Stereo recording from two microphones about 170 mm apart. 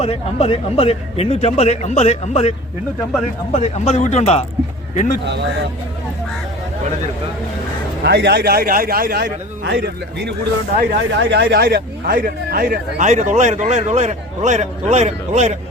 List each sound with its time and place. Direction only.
0.0 s speech: 35° left (ahead or behind)
3.5 s speech: 40° left (ahead or behind)
5.2 s speech: 90° right
8.0 s a man's voice: 75° right (ahead or behind)
10.8 s a man's voice: 90° right; by 15.5 s 40° right (ahead or behind)